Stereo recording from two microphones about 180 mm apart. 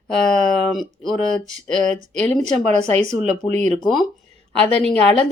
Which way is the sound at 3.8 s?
Centre (ahead or behind).